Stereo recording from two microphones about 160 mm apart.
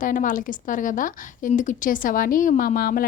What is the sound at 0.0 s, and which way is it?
A woman's voice, 55° left (ahead or behind).